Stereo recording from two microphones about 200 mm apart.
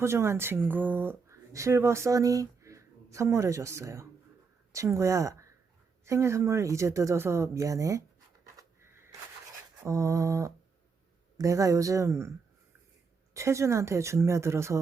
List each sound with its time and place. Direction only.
0.0 s speech: 15° right (ahead or behind)
8.5 s a sound: 15° right (ahead or behind)
9.8 s speech: 15° right (ahead or behind)
13.3 s speech: 15° right (ahead or behind)